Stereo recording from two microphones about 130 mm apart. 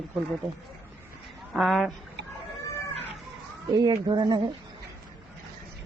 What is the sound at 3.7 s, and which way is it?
Speech, 30° right (ahead or behind).